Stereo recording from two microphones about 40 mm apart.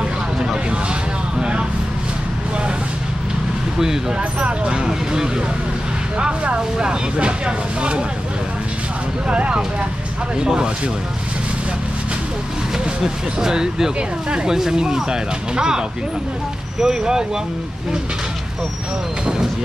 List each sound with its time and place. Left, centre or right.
0.4 s vehicle: centre
4.4 s speech: right
4.8 s speech: centre
6.1 s speech: right
9.3 s speech: right
13.0 s speech: centre
16.8 s speech: centre